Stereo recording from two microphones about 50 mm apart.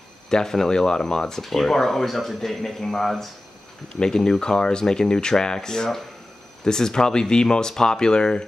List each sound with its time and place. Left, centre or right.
0.3 s speech: centre